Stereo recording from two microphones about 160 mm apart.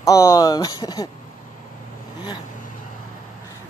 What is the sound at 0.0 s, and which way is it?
Speech, 20° left (ahead or behind).